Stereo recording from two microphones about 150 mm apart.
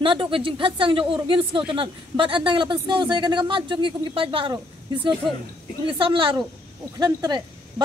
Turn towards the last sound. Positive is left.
turn(degrees=-25)  # may be behind; listen again after turning